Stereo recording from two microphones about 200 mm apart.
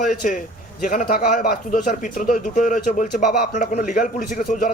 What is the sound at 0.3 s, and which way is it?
A man's voice, 40° left (ahead or behind).